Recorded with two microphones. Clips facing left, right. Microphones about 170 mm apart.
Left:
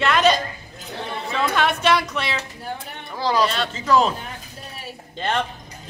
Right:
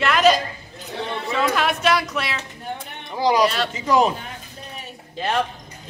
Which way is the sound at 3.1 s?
15° right (ahead or behind).